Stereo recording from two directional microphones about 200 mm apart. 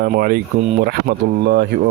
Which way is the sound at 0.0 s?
50° right (ahead or behind).